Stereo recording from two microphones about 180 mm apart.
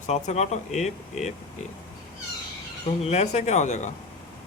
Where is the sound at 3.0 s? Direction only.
40° left (ahead or behind).